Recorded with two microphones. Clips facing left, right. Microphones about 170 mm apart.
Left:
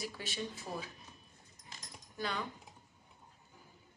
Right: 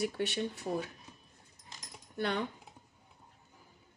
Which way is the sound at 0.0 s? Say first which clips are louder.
Right 8 dB; 65° right (ahead or behind).